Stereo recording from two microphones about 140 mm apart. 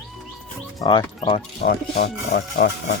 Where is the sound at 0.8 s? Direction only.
30° left (ahead or behind).